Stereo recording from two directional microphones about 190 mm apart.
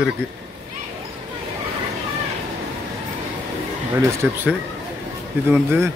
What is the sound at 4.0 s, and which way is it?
Speech, 15° right (ahead or behind).